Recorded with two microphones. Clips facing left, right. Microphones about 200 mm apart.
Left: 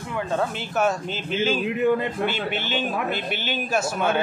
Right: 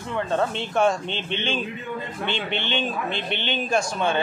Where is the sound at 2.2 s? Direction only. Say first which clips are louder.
Left 1 dB; 5° left (ahead or behind).